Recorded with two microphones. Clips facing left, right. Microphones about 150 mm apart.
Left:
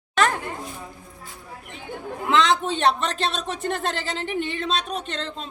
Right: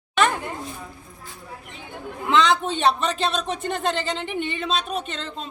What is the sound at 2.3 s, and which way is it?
Speech, centre (ahead or behind).